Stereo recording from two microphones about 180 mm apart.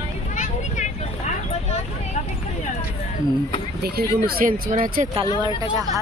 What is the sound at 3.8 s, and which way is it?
Speech, 60° right (ahead or behind).